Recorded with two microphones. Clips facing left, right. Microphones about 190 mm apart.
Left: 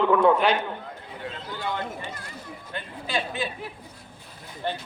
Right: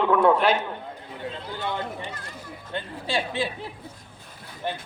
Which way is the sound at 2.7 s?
30° right (ahead or behind).